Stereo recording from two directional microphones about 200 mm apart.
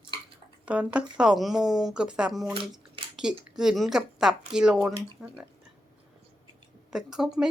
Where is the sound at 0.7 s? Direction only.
5° right (ahead or behind).